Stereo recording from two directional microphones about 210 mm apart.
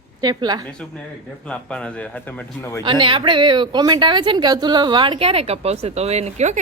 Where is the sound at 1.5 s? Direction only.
5° left (ahead or behind).